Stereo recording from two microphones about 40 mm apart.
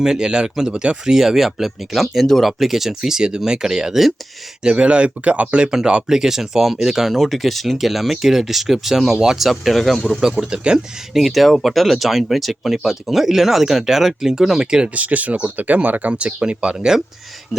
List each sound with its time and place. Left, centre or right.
0.0 s speech: centre
4.6 s speech: right
5.6 s speech: centre
7.1 s speech: centre
9.5 s speech: centre
10.5 s speech: right
11.1 s speech: centre
14.6 s speech: right
14.9 s speech: right